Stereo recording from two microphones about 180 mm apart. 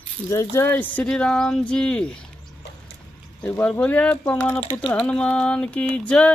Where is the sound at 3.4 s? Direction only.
10° left (ahead or behind).